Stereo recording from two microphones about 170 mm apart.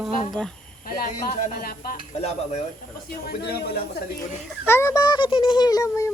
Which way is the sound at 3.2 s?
70° left (ahead or behind).